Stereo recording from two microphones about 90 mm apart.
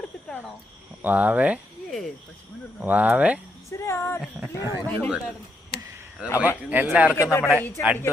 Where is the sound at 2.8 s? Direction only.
20° right (ahead or behind).